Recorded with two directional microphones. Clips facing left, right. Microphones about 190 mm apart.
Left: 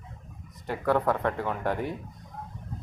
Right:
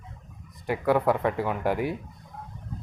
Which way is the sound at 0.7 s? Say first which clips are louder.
Right 2 dB; 10° right (ahead or behind).